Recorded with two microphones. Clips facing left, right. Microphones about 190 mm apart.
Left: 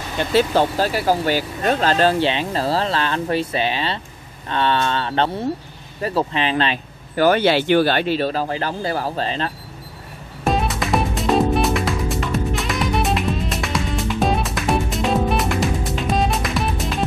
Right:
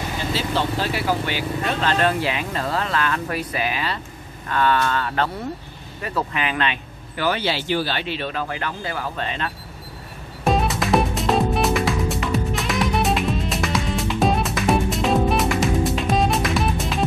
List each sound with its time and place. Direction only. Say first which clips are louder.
0.2 s speech: left 8 dB; 55° left (ahead or behind)
0.7 s speech: left 4 dB; 40° left (ahead or behind)
10.4 s music: even; centre (ahead or behind)